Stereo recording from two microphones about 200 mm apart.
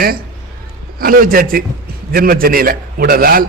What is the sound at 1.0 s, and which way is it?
A man's voice, 45° right (ahead or behind).